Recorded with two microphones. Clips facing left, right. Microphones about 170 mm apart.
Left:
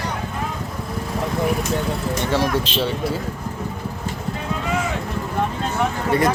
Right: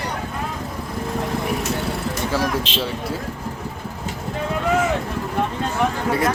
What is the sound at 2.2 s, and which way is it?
Speech, centre (ahead or behind).